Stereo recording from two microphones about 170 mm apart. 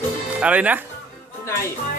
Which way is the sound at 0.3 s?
10° right (ahead or behind).